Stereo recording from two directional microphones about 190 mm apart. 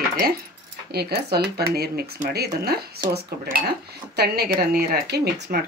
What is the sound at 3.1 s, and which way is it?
Speech, 55° right (ahead or behind).